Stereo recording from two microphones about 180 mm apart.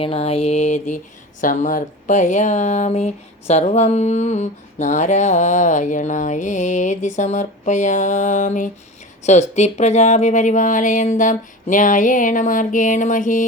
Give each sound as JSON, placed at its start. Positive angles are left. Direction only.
{"t": 0.0, "sound": "mantra", "side_deg": 35}
{"t": 1.4, "sound": "speech", "side_deg": 45}